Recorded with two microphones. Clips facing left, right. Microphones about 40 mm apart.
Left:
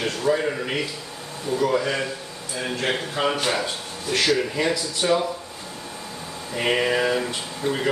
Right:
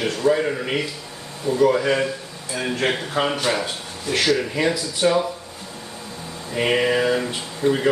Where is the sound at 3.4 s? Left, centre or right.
Centre.